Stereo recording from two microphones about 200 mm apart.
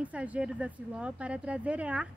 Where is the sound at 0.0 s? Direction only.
5° right (ahead or behind).